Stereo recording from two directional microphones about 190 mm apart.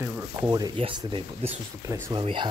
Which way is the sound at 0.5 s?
20° right (ahead or behind).